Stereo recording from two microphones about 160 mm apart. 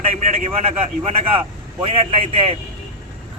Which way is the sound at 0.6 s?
35° right (ahead or behind).